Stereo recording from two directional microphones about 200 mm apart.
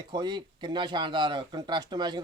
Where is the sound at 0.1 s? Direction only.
20° right (ahead or behind).